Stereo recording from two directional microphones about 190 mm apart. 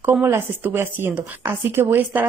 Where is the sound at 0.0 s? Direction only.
10° right (ahead or behind).